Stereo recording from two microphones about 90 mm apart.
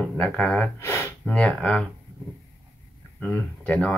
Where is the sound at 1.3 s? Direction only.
15° left (ahead or behind).